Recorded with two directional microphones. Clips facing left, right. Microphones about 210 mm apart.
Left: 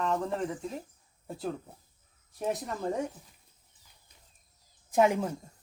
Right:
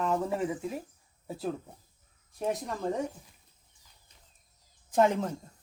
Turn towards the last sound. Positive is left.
turn(degrees=10)  # may be behind; listen again after turning